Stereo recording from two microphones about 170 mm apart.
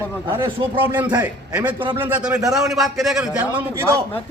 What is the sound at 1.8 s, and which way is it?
Speech, 30° right (ahead or behind).